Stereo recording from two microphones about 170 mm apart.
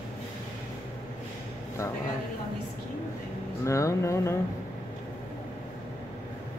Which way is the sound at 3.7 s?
15° left (ahead or behind).